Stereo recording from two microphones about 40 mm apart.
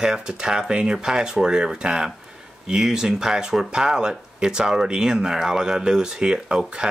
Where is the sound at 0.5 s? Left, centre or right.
Centre.